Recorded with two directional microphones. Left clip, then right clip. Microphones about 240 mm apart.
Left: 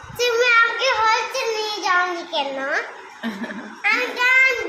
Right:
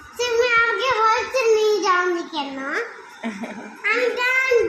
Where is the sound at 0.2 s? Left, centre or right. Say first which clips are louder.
Left 2 dB; left.